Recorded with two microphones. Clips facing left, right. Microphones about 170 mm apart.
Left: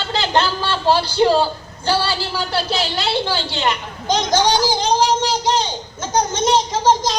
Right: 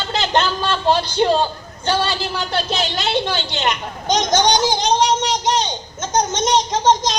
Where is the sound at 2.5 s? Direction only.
20° right (ahead or behind).